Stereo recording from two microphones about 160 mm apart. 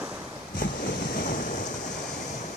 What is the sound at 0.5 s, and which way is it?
Waves, 55° left (ahead or behind).